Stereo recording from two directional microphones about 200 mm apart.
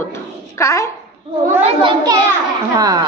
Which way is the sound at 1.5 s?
30° right (ahead or behind).